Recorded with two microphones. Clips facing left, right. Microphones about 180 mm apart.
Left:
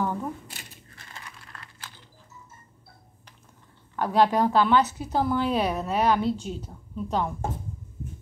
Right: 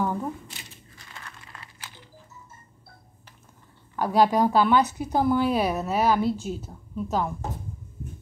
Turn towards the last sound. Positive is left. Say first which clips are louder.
# right 1 dB
turn(degrees=-5)  # may be behind; listen again after turning